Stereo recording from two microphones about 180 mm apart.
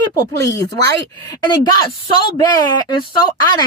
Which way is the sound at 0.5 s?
20° left (ahead or behind).